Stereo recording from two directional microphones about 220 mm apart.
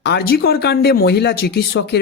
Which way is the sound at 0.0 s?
45° left (ahead or behind).